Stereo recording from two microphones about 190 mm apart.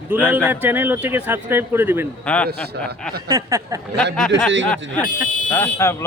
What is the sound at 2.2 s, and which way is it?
Speech, 5° left (ahead or behind).